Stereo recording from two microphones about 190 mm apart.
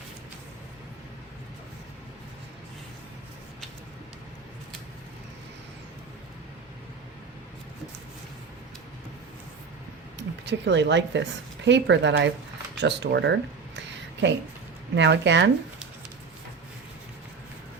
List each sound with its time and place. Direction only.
10.2 s a woman's voice: 65° right (ahead or behind)
13.7 s a sound: 70° right (ahead or behind)
14.9 s speech: 70° right (ahead or behind)